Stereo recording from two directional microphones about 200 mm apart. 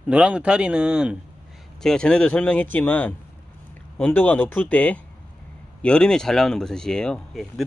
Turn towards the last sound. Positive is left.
turn(degrees=0)  # may be behind; listen again after turning